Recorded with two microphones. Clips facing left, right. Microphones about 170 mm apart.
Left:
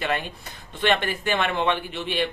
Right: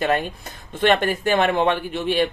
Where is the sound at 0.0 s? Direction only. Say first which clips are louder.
Right 6 dB; 45° right (ahead or behind).